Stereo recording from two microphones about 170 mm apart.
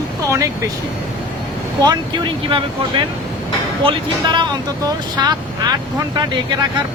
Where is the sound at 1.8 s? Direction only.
25° right (ahead or behind).